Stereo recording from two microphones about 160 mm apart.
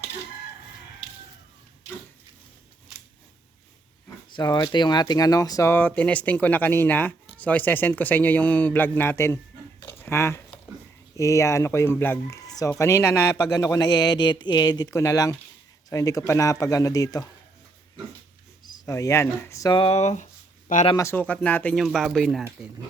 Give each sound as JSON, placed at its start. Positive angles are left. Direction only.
{"t": 4.4, "sound": "speech", "side_deg": 25}
{"t": 18.6, "sound": "speech", "side_deg": 20}
{"t": 19.8, "sound": "speech", "side_deg": 40}
{"t": 20.9, "sound": "speech", "side_deg": 15}